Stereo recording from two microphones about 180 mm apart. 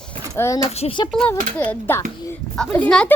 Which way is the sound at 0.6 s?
35° left (ahead or behind).